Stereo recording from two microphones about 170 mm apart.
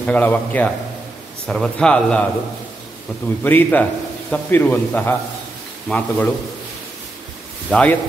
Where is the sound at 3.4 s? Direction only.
10° left (ahead or behind).